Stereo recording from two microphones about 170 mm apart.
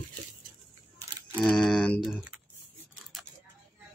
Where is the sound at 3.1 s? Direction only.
Centre (ahead or behind).